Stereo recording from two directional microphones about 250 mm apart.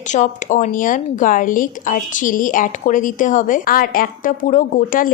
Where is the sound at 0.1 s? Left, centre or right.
Left.